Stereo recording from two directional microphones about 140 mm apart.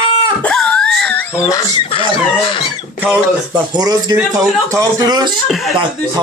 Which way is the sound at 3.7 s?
30° right (ahead or behind).